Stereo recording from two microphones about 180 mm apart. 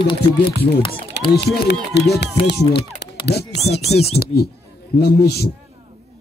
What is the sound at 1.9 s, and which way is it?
Speech, 70° left (ahead or behind).